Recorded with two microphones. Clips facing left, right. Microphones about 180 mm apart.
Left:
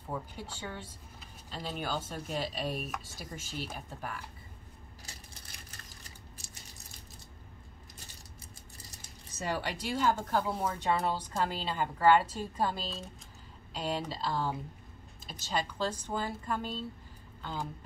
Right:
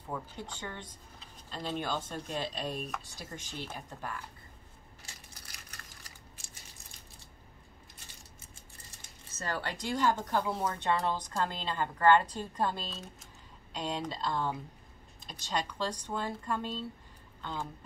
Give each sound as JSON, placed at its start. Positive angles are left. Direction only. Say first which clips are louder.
{"t": 0.1, "sound": "speech", "louder": "even", "side_deg": 5}
{"t": 5.0, "sound": "coin", "louder": "left 1 dB", "side_deg": 25}
{"t": 9.4, "sound": "speech", "louder": "left 2 dB", "side_deg": 15}